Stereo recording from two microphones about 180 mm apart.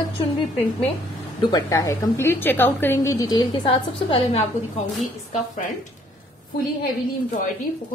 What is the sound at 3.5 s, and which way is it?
Speech, 30° left (ahead or behind).